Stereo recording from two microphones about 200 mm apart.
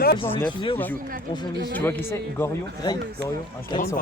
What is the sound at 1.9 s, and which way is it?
Speech, 10° left (ahead or behind).